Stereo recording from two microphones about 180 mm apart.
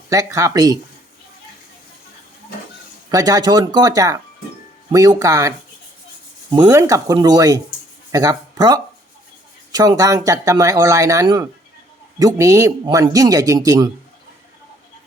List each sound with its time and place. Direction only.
0.1 s speech: 20° right (ahead or behind)
3.1 s speech: 20° right (ahead or behind)